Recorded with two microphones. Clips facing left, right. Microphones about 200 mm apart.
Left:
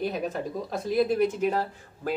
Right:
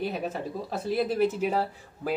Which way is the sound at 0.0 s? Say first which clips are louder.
Left 2 dB; centre (ahead or behind).